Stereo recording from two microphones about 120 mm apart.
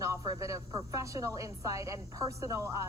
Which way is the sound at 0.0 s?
25° right (ahead or behind).